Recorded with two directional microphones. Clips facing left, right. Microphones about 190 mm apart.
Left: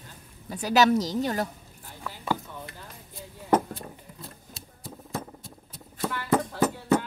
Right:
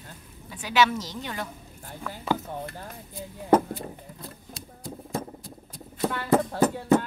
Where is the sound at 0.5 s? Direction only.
40° left (ahead or behind).